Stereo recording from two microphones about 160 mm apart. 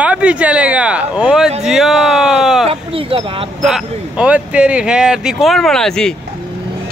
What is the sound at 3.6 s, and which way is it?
Speech, 5° right (ahead or behind).